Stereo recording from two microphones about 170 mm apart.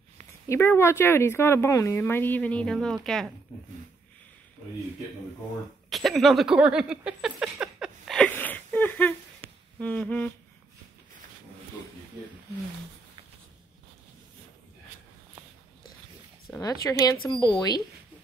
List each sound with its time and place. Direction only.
0.5 s speech: 15° left (ahead or behind)
5.9 s a sound: centre (ahead or behind)
9.8 s speech: 10° left (ahead or behind)
16.5 s speech: 20° left (ahead or behind)